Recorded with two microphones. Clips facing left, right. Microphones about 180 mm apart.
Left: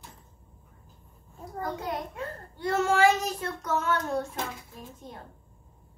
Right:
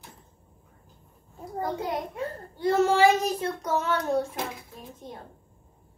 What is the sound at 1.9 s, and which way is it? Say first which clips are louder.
A child's voice: right 3 dB; 30° right (ahead or behind).